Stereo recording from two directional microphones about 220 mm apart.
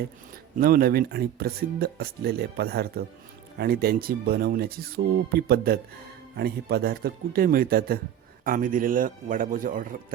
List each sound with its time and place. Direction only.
0.5 s a man's voice: 40° right (ahead or behind)